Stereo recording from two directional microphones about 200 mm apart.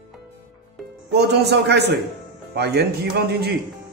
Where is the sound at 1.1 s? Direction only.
55° right (ahead or behind).